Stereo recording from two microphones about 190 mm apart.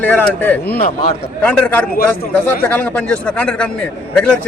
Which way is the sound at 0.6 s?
55° left (ahead or behind).